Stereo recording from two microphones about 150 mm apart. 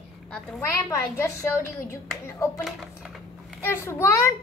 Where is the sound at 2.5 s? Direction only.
Centre (ahead or behind).